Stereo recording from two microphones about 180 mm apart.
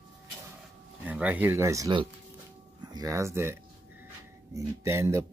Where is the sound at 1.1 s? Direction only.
10° right (ahead or behind).